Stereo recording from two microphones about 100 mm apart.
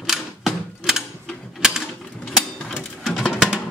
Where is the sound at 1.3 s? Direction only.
5° left (ahead or behind).